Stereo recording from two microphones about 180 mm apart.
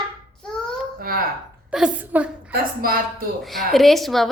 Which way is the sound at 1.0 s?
55° right (ahead or behind).